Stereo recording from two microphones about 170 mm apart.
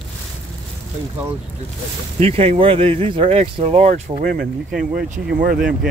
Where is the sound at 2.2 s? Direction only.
35° right (ahead or behind).